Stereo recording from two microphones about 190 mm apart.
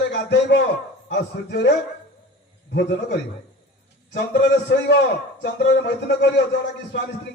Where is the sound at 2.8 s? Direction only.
60° left (ahead or behind).